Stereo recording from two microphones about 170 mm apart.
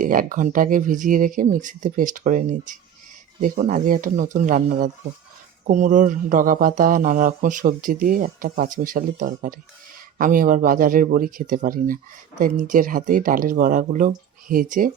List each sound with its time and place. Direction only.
0.0 s speech: 55° right (ahead or behind)